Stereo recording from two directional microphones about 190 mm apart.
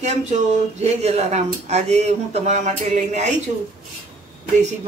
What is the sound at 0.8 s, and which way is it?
Speech, 35° right (ahead or behind).